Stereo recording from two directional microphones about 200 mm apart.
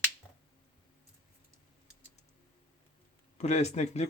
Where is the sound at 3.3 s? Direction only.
35° left (ahead or behind).